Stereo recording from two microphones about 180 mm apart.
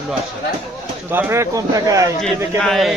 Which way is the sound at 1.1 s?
15° right (ahead or behind).